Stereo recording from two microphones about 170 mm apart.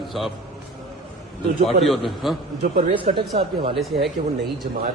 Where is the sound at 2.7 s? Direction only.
35° right (ahead or behind).